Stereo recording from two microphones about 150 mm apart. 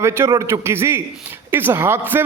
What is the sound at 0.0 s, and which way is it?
A man's voice, 20° right (ahead or behind).